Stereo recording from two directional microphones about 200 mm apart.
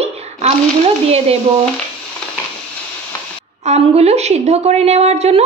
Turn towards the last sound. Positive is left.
turn(degrees=-30)  # may be behind; listen again after turning